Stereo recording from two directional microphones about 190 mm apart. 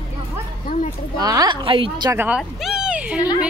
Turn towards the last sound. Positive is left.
turn(degrees=-5)  # may be behind; listen again after turning